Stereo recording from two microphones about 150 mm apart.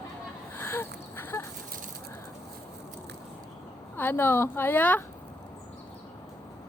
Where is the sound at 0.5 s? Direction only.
15° left (ahead or behind).